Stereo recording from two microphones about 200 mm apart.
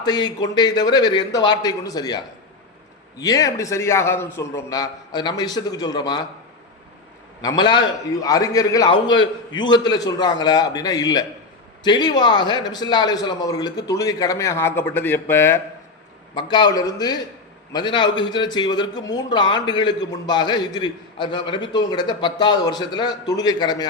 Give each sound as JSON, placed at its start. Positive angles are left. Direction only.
{"t": 0.0, "sound": "a man's voice", "side_deg": 20}
{"t": 7.4, "sound": "a man's voice", "side_deg": 20}
{"t": 16.3, "sound": "a man's voice", "side_deg": 20}